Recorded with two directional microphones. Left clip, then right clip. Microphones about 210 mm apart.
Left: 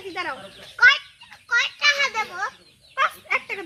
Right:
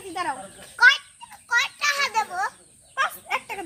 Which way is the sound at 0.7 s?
45° right (ahead or behind).